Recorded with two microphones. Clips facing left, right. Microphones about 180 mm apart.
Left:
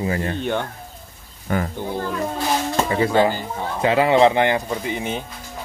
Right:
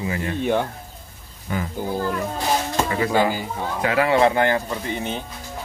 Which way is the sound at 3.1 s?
10° right (ahead or behind).